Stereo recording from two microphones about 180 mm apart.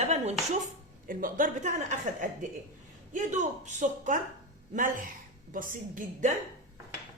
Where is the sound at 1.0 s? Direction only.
50° right (ahead or behind).